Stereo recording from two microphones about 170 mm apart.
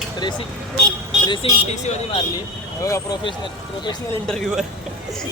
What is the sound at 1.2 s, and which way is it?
Speech, 35° left (ahead or behind).